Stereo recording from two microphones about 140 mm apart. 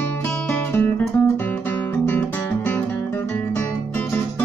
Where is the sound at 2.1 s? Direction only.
10° left (ahead or behind).